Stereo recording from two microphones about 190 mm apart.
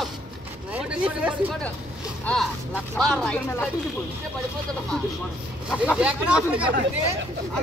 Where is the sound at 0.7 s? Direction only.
5° right (ahead or behind).